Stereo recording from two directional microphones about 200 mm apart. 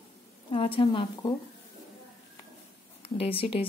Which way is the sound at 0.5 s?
25° left (ahead or behind).